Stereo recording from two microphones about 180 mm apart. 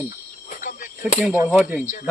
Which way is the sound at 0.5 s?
45° left (ahead or behind).